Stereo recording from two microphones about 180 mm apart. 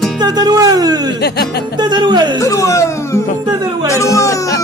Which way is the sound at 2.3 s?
15° left (ahead or behind).